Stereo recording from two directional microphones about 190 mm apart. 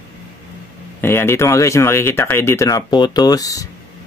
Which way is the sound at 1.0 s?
10° left (ahead or behind).